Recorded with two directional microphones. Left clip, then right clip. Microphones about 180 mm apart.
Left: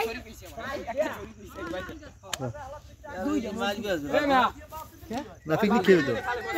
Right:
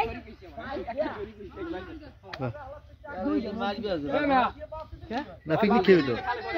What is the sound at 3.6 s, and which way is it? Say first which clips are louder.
Speech: left 1 dB; 25° right (ahead or behind).